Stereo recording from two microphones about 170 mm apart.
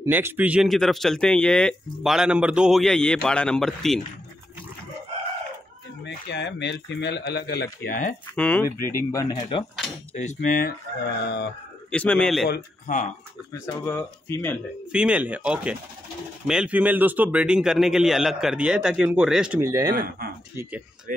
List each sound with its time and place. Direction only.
0.0 s speech: 15° right (ahead or behind)
6.0 s speech: 85° left; by 8.0 s 70° left (ahead or behind)
8.4 s speech: 10° left (ahead or behind)
9.4 s cutlery: 30° left (ahead or behind)
10.1 s speech: 45° left (ahead or behind)
11.1 s speech: 80° left
11.9 s speech: 5° left (ahead or behind)
12.8 s speech: 45° left (ahead or behind)
13.5 s speech: 15° left (ahead or behind)
14.9 s speech: 5° right (ahead or behind)
19.6 s speech: 20° right (ahead or behind)